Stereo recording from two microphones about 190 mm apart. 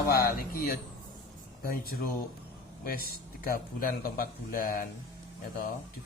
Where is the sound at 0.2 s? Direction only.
50° left (ahead or behind).